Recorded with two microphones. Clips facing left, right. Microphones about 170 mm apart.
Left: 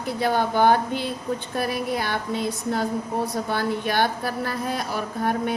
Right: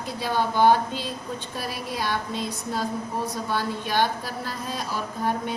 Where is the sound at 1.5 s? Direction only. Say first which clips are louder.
Left 6 dB; 55° left (ahead or behind).